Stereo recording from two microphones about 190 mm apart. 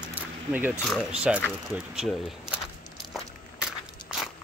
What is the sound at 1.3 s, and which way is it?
Speech, 5° right (ahead or behind).